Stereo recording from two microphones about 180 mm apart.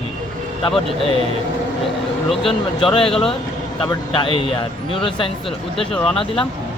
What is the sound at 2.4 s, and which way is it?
Speech, 30° left (ahead or behind).